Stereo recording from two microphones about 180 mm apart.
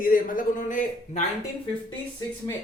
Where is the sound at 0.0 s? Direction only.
50° left (ahead or behind).